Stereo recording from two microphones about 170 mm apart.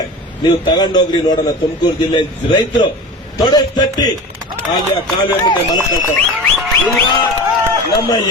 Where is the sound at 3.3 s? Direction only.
25° left (ahead or behind).